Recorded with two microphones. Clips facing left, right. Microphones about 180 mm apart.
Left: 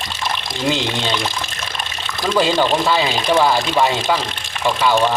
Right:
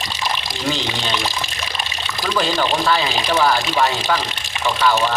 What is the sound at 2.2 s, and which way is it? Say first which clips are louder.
Speech: left 4 dB; 20° left (ahead or behind).